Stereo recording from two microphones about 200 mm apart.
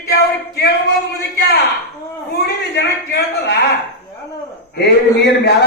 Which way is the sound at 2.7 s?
55° left (ahead or behind).